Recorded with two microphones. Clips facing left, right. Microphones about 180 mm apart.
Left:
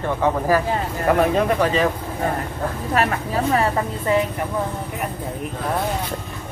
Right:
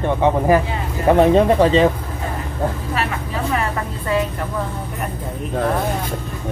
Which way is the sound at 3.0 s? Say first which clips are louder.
Left 4 dB; 50° left (ahead or behind).